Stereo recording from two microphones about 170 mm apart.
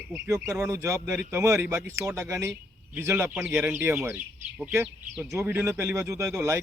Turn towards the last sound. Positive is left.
turn(degrees=-15)  # may be behind; listen again after turning